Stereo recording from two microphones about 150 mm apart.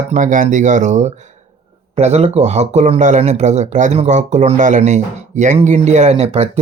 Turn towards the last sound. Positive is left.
turn(degrees=-40)  # may be behind; listen again after turning